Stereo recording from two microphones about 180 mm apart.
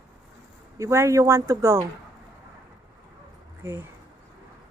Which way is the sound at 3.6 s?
15° right (ahead or behind).